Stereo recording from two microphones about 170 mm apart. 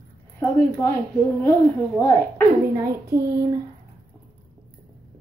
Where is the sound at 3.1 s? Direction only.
20° right (ahead or behind).